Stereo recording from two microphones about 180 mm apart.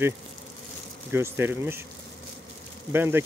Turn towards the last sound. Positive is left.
turn(degrees=-10)  # may be behind; listen again after turning